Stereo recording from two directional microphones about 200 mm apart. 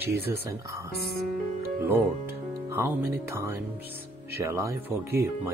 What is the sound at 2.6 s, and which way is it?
Speech, 15° right (ahead or behind).